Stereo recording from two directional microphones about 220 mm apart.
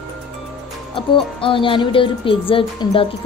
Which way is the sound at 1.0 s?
20° left (ahead or behind).